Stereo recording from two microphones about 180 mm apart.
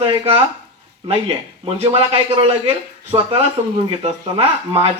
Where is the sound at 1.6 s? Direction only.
30° right (ahead or behind).